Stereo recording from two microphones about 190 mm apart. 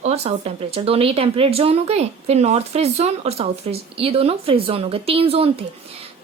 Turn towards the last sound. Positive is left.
turn(degrees=-30)  # may be behind; listen again after turning